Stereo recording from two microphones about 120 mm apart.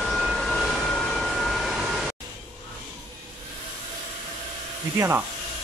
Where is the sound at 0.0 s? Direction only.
Centre (ahead or behind).